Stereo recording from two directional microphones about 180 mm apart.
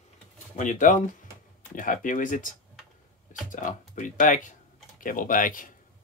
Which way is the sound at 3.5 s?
45° left (ahead or behind).